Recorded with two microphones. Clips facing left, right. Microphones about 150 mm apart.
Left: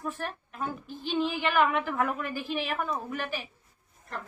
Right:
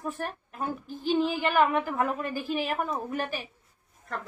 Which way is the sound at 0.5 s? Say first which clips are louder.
Right 3 dB; 40° right (ahead or behind).